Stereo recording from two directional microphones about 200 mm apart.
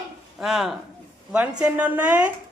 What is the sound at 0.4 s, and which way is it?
A woman's voice, centre (ahead or behind).